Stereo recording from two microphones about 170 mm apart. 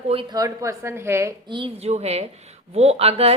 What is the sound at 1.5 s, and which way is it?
A woman's voice, 30° right (ahead or behind).